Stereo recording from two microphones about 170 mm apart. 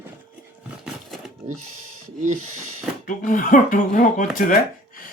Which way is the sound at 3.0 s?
50° left (ahead or behind).